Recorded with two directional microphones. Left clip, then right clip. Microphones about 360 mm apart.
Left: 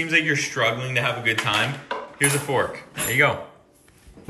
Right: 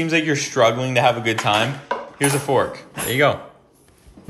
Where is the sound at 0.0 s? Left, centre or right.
Centre.